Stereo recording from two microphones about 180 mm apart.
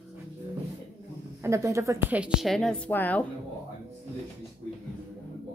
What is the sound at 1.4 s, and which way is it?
A woman's voice, 15° right (ahead or behind).